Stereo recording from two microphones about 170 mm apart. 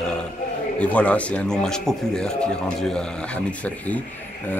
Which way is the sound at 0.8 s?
10° left (ahead or behind).